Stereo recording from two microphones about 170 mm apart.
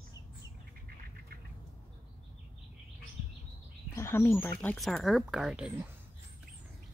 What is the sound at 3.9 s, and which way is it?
Speech, 15° left (ahead or behind).